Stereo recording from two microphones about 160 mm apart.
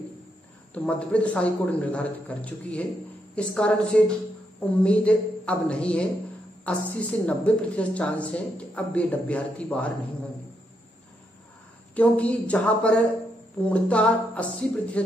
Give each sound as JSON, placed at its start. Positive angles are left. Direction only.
{"t": 0.8, "sound": "a woman's voice", "side_deg": 5}
{"t": 11.9, "sound": "a woman's voice", "side_deg": 10}